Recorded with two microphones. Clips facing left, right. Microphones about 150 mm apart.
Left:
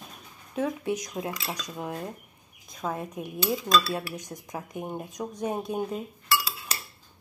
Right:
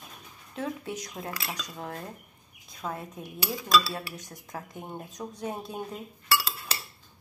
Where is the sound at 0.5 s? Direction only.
15° left (ahead or behind).